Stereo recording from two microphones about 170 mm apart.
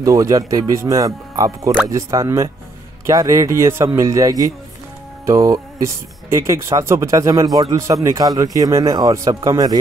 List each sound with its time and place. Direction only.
0.0 s speech: 20° right (ahead or behind)